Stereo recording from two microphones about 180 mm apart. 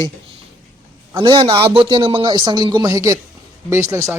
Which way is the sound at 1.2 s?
25° right (ahead or behind).